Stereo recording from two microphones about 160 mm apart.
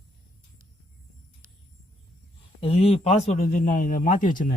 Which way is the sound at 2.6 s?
35° left (ahead or behind).